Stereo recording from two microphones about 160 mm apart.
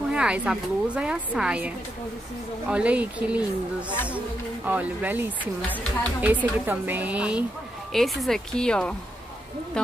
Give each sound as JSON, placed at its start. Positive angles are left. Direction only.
{"t": 0.1, "sound": "a woman's voice", "side_deg": -5}
{"t": 2.7, "sound": "a woman's voice", "side_deg": -10}
{"t": 4.6, "sound": "a woman's voice", "side_deg": -10}